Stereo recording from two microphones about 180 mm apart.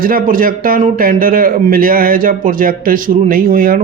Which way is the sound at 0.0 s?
50° right (ahead or behind).